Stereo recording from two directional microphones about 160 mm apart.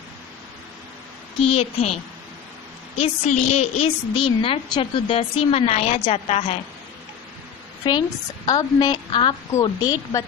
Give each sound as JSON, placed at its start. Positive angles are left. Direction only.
{"t": 1.4, "sound": "a woman's voice", "side_deg": 40}
{"t": 3.0, "sound": "a woman's voice", "side_deg": 40}
{"t": 8.5, "sound": "a woman's voice", "side_deg": 25}